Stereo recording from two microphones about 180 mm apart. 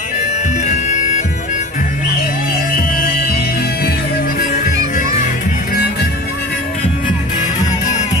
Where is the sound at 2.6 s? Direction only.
55° left (ahead or behind).